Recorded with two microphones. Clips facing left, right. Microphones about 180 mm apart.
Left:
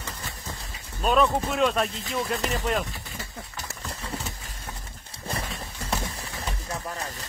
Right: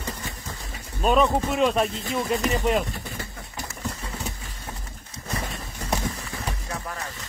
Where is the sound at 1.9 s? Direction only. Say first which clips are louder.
Right 5 dB; 50° right (ahead or behind).